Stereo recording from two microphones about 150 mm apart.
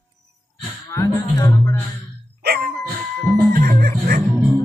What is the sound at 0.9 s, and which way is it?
Speech, 20° left (ahead or behind).